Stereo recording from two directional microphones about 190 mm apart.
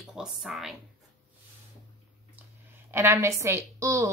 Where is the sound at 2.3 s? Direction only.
10° right (ahead or behind).